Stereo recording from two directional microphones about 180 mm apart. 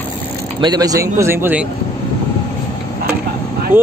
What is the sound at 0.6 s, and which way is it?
Speech, 20° right (ahead or behind).